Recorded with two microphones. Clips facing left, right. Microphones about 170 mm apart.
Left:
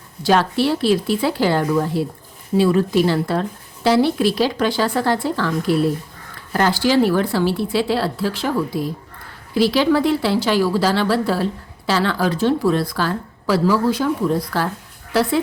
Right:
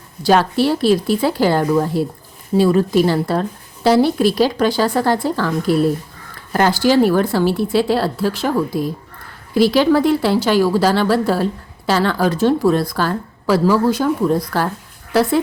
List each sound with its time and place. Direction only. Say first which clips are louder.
0.2 s a woman's voice: right 2 dB; 40° right (ahead or behind)